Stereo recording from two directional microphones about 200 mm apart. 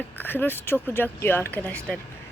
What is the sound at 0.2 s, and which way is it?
Speech, 10° left (ahead or behind).